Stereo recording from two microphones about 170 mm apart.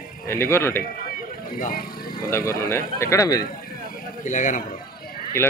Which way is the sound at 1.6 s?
55° left (ahead or behind).